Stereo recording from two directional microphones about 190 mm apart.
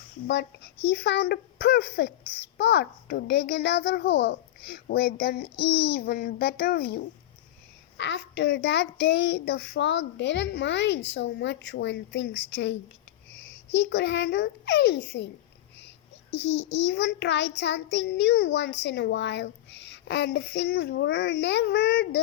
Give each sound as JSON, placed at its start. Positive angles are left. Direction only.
{"t": 0.3, "sound": "a child's voice", "side_deg": 65}
{"t": 7.9, "sound": "a child's voice", "side_deg": 70}
{"t": 16.5, "sound": "a child's voice", "side_deg": 35}
{"t": 16.8, "sound": "a child's voice", "side_deg": 65}